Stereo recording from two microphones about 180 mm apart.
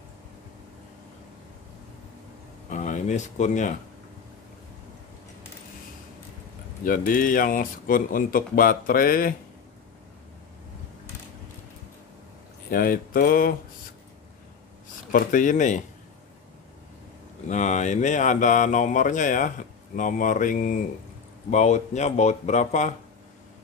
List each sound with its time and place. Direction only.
2.7 s speech: 45° left (ahead or behind)
6.8 s speech: 50° left (ahead or behind)
12.6 s speech: 55° left (ahead or behind)
15.0 s speech: 50° left (ahead or behind)
17.5 s speech: 40° left (ahead or behind)